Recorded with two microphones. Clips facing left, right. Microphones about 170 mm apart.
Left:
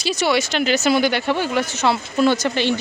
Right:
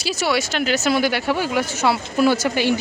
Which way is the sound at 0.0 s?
5° right (ahead or behind).